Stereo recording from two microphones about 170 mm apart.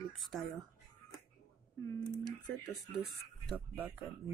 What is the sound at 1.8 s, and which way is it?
Speech, 20° left (ahead or behind).